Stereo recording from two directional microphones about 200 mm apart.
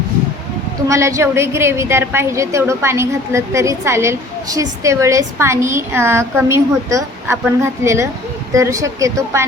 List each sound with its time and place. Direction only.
0.9 s a woman's voice: 15° right (ahead or behind)